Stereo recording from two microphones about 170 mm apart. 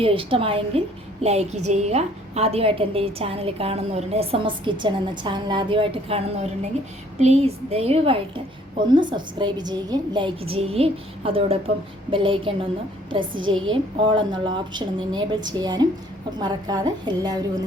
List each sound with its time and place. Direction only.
0.0 s a woman's voice: 30° right (ahead or behind)